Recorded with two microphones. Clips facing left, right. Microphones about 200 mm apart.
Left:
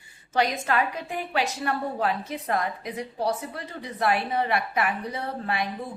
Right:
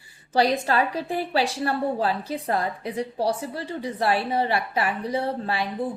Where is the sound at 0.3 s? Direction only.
30° right (ahead or behind).